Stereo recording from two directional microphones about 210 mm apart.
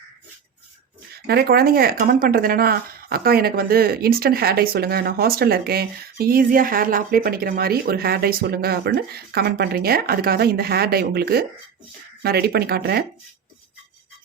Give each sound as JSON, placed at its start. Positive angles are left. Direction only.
{"t": 1.1, "sound": "speech", "side_deg": -50}